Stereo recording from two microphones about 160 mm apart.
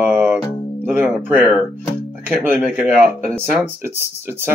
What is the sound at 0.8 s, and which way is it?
Music, 10° right (ahead or behind).